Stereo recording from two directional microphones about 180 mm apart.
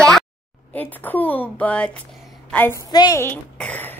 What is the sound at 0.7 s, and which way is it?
A woman's voice, 10° left (ahead or behind).